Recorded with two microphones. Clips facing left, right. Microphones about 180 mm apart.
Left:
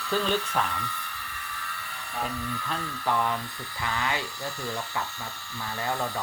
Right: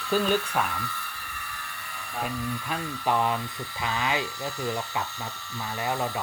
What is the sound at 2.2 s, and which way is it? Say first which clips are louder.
Speech: right 3 dB; 15° right (ahead or behind).